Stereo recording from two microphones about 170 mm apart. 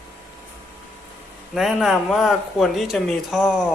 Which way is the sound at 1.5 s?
Centre (ahead or behind).